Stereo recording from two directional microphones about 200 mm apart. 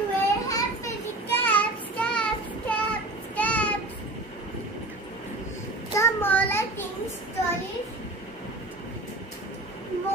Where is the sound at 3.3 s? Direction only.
5° left (ahead or behind).